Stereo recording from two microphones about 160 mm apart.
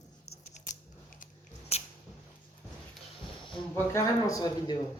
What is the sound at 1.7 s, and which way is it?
Scissors, 40° left (ahead or behind).